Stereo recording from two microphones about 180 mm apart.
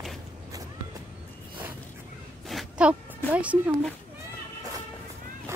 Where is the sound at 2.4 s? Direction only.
5° right (ahead or behind).